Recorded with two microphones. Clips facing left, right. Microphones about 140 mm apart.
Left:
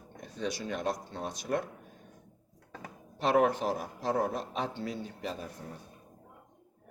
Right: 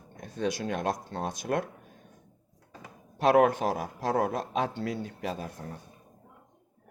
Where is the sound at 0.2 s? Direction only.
55° right (ahead or behind).